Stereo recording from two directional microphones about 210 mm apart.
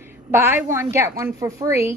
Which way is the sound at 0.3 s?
10° right (ahead or behind).